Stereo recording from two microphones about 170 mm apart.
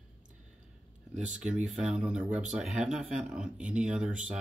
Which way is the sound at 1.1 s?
45° right (ahead or behind).